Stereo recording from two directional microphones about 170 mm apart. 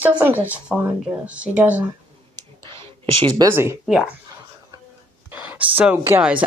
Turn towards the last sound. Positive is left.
turn(degrees=-10)  # may be behind; listen again after turning